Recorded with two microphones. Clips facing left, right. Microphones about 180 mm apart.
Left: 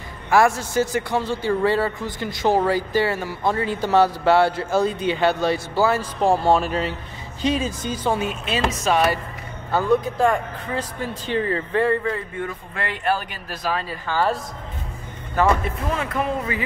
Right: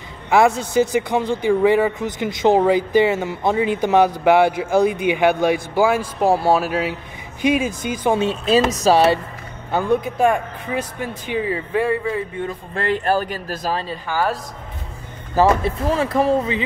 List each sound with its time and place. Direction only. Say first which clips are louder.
0.3 s a man's voice: right 2 dB; 20° right (ahead or behind)
8.2 s speech: right 7 dB; 35° right (ahead or behind)
9.7 s a man's voice: even; 20° right (ahead or behind)
12.7 s speech: right 5 dB; 40° right (ahead or behind)
14.0 s a man's voice: even; 10° right (ahead or behind)
15.3 s speech: right 4 dB; 35° right (ahead or behind)